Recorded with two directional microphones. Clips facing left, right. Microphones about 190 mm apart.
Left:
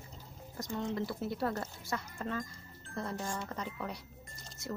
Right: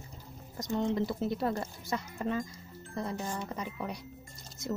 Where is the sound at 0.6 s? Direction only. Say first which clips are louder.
Right 5 dB; 20° right (ahead or behind).